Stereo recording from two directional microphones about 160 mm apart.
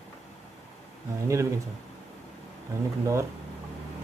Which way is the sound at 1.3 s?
20° right (ahead or behind).